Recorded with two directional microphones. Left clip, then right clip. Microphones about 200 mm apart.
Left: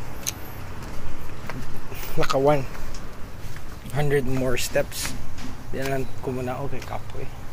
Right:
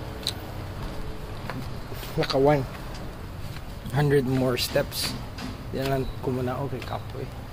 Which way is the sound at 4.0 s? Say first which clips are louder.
Right 1 dB; centre (ahead or behind).